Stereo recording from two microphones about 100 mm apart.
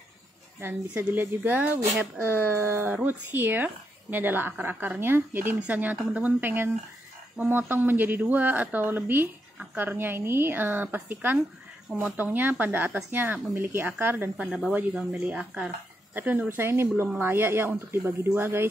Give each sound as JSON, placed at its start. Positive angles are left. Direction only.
{"t": 0.6, "sound": "speech", "side_deg": -20}
{"t": 14.3, "sound": "speech", "side_deg": -5}